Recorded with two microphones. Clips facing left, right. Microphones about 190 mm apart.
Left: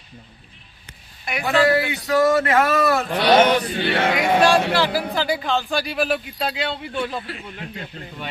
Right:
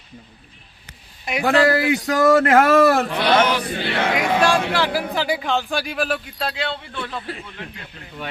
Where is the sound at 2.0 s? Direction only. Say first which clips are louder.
Right 2 dB; 50° right (ahead or behind).